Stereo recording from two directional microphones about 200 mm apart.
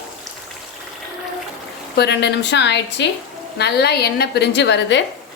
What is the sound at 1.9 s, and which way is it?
Speech, 55° left (ahead or behind).